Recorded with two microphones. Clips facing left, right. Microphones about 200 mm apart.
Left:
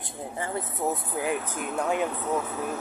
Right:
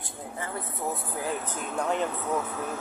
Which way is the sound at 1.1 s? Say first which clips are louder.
Left 3 dB; 15° left (ahead or behind).